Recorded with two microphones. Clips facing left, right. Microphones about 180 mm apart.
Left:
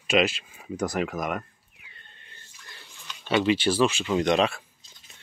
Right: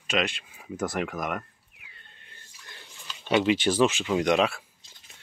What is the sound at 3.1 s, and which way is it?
Speech, 10° right (ahead or behind).